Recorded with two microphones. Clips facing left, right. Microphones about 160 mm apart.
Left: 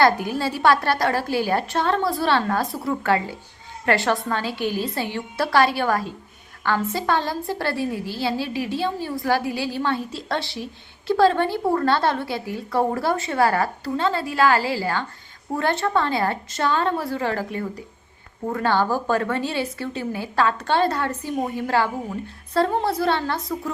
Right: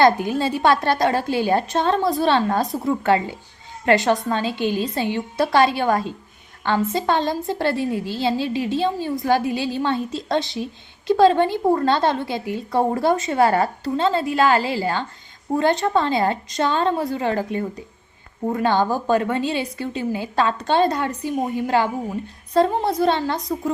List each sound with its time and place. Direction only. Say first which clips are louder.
0.0 s a woman's voice: right 2 dB; 20° right (ahead or behind)